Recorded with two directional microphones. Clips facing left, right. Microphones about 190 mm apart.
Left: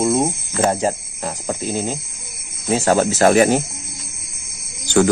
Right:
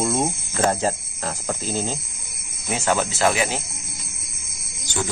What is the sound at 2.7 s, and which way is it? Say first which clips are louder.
Speech: left 7 dB; 40° left (ahead or behind).